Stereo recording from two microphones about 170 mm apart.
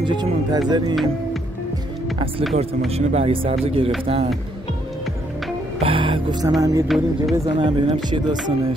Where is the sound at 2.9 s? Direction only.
40° right (ahead or behind).